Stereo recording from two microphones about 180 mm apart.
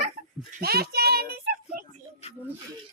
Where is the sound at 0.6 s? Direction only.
60° right (ahead or behind).